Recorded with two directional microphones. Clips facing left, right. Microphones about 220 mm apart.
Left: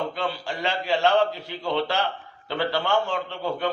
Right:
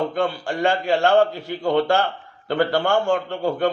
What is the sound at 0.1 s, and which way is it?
A man's voice, 50° right (ahead or behind).